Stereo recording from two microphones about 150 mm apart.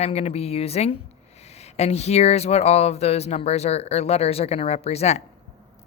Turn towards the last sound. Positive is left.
turn(degrees=45)  # may be behind; listen again after turning